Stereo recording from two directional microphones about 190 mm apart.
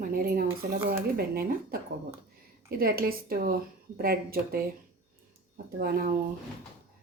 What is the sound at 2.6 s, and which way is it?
A woman's voice, 50° right (ahead or behind).